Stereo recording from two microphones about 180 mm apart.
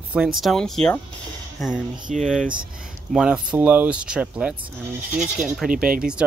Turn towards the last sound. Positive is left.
turn(degrees=-50)  # may be behind; listen again after turning